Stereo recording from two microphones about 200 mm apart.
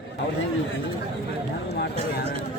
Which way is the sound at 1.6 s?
55° left (ahead or behind).